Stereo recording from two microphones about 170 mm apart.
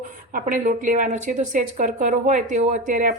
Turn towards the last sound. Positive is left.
turn(degrees=-50)  # may be behind; listen again after turning